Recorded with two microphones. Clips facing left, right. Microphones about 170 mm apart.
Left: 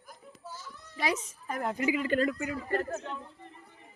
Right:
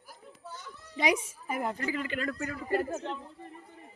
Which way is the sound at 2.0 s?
40° left (ahead or behind).